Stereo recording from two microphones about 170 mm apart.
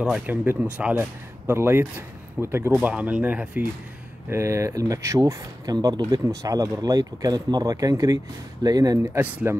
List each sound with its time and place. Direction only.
0.0 s speech: 5° right (ahead or behind)